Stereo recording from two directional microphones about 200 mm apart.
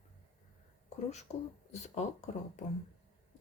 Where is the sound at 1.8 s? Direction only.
35° left (ahead or behind).